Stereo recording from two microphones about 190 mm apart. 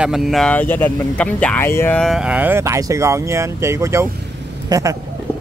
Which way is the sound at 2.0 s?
Centre (ahead or behind).